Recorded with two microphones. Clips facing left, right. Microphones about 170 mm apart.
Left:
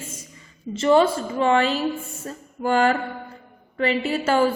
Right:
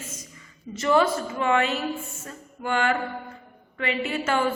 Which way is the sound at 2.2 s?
35° left (ahead or behind).